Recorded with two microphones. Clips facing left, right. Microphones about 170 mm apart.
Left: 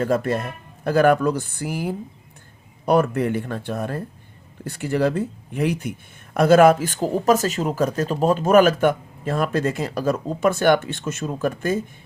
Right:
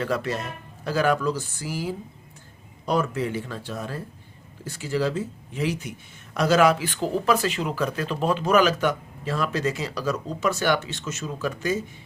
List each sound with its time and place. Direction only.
0.0 s speech: 50° left (ahead or behind)